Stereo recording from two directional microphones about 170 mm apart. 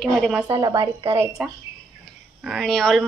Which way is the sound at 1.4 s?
5° right (ahead or behind).